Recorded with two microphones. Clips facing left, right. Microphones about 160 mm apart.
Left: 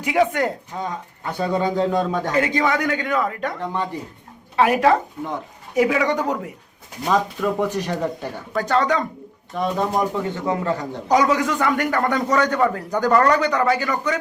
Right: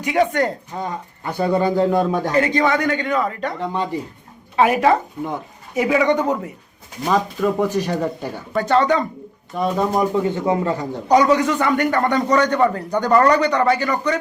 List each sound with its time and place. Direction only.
0.0 s speech: 5° left (ahead or behind)
0.8 s speech: 10° right (ahead or behind)
2.3 s a man's voice: 5° left (ahead or behind)
3.6 s speech: 15° right (ahead or behind)
4.5 s a man's voice: centre (ahead or behind)
10.4 s speech: 15° right (ahead or behind)
11.1 s a man's voice: centre (ahead or behind)